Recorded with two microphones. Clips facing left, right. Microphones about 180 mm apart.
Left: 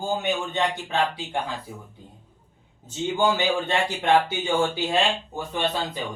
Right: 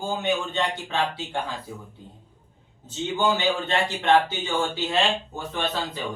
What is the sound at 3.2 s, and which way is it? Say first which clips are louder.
Speech: left 1 dB; 10° left (ahead or behind).